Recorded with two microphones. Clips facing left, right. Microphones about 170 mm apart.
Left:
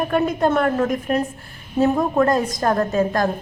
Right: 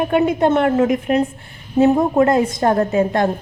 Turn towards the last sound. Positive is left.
turn(degrees=-25)  # may be behind; listen again after turning